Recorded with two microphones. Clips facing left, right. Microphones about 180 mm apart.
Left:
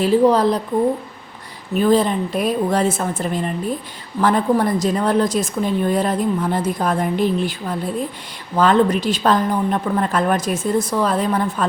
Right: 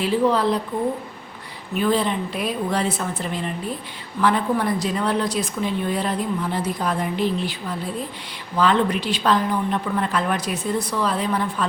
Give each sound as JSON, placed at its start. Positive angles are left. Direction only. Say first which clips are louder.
{"t": 0.0, "sound": "a woman's voice", "louder": "left 5 dB", "side_deg": 40}
{"t": 1.7, "sound": "a woman's voice", "louder": "left 5 dB", "side_deg": 40}